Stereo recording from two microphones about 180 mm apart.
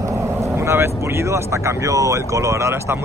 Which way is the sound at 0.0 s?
15° right (ahead or behind).